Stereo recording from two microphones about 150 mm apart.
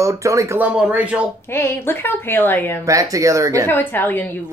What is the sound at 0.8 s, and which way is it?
Speech, 10° right (ahead or behind).